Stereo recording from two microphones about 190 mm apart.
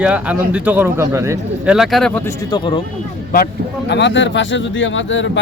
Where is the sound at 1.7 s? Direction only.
Centre (ahead or behind).